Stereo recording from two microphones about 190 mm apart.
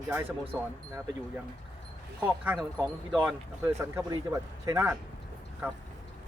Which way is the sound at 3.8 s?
15° right (ahead or behind).